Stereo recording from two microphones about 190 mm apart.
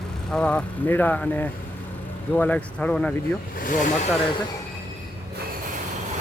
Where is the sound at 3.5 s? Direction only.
45° left (ahead or behind).